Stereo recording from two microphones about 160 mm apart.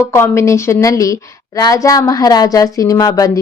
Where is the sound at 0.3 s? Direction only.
15° left (ahead or behind).